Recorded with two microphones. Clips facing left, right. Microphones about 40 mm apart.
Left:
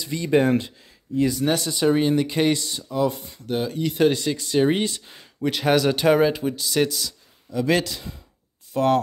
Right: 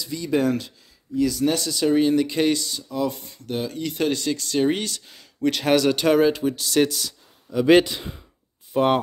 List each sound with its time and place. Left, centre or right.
0.0 s speech: left
1.3 s speech: centre
5.4 s speech: centre
7.6 s speech: right